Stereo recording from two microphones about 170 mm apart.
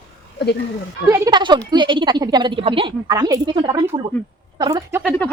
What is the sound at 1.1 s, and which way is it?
A woman's voice, 20° right (ahead or behind).